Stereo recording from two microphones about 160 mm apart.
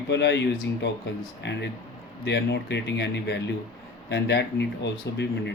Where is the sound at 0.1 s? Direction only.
90° left.